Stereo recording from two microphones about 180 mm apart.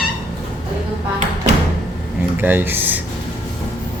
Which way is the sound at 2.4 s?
10° right (ahead or behind).